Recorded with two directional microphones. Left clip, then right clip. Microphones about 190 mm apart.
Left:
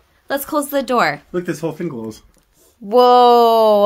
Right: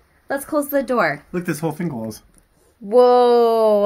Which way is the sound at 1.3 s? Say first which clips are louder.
Left 2 dB; 50° right (ahead or behind).